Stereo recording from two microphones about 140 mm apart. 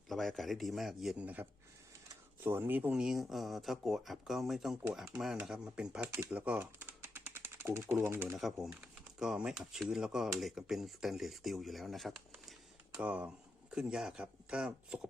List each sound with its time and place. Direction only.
0.1 s speech: centre (ahead or behind)
6.3 s typing: 10° right (ahead or behind)
8.6 s speech: 5° right (ahead or behind)